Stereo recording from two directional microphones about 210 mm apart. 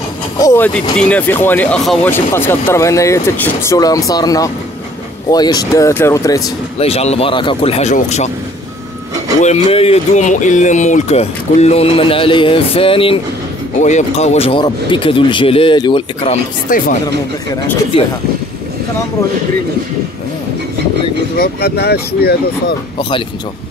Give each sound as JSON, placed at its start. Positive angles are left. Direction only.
{"t": 0.4, "sound": "speech", "side_deg": 10}
{"t": 6.8, "sound": "speech", "side_deg": 30}
{"t": 9.4, "sound": "speech", "side_deg": 30}
{"t": 16.6, "sound": "speech", "side_deg": 40}
{"t": 17.9, "sound": "speech", "side_deg": 25}
{"t": 21.4, "sound": "speech", "side_deg": 50}
{"t": 22.9, "sound": "speech", "side_deg": 25}